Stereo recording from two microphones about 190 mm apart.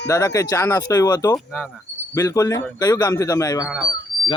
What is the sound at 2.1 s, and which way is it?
Speech, 15° left (ahead or behind).